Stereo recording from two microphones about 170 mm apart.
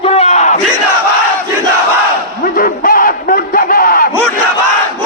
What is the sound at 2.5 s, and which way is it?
Crowd, 55° left (ahead or behind).